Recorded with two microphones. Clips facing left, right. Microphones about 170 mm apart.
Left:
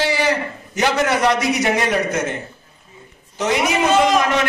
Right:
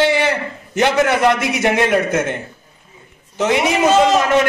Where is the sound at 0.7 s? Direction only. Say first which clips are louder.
Right 3 dB; 55° right (ahead or behind).